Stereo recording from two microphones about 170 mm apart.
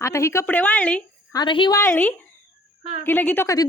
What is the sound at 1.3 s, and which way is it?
A woman's voice, 25° left (ahead or behind).